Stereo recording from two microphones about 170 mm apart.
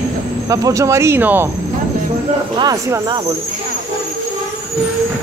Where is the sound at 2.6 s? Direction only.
20° right (ahead or behind).